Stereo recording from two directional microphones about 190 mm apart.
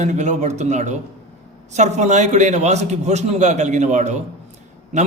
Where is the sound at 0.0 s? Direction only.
40° right (ahead or behind).